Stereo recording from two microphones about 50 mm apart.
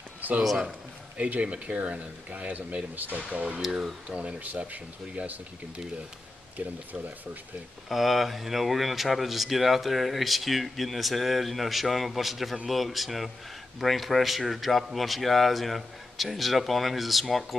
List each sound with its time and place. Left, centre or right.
0.4 s speech: centre
1.1 s speech: right
4.4 s speech: right
7.9 s speech: centre